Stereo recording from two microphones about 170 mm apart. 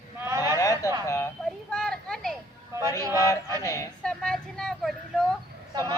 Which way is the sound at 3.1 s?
20° left (ahead or behind).